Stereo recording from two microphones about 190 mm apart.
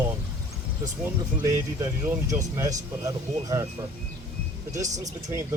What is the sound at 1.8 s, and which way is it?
Speech, 15° right (ahead or behind).